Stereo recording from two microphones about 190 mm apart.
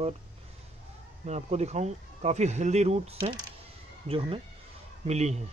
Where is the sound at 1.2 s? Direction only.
35° right (ahead or behind).